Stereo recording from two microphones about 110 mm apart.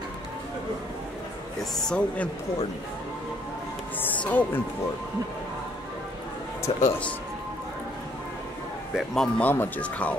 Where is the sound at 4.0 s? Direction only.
15° left (ahead or behind).